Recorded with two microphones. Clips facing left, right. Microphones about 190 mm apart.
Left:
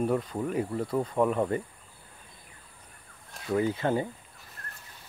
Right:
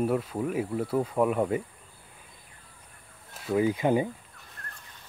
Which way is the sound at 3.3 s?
5° right (ahead or behind).